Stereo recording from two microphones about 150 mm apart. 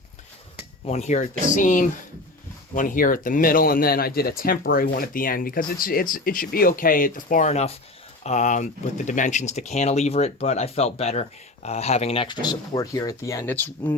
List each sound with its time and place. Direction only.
0.9 s speech: 50° left (ahead or behind); by 13.9 s 15° left (ahead or behind)